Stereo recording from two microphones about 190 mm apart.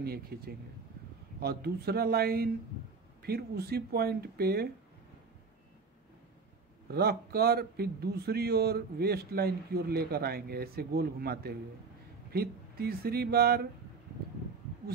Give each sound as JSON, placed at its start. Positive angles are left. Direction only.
{"t": 0.0, "sound": "speech", "side_deg": -55}
{"t": 6.9, "sound": "speech", "side_deg": -55}